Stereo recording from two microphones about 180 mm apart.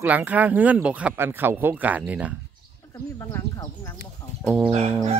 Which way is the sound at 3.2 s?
15° left (ahead or behind).